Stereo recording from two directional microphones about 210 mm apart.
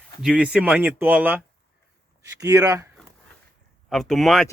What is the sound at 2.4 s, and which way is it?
Speech, 15° right (ahead or behind).